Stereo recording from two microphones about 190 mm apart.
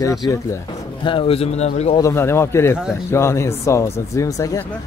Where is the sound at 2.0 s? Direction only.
15° left (ahead or behind).